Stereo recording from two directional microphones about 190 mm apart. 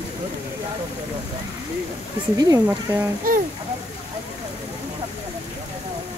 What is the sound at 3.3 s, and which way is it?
Speech, 50° right (ahead or behind).